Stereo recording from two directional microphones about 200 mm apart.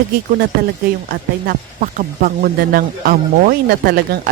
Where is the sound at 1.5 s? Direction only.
40° right (ahead or behind).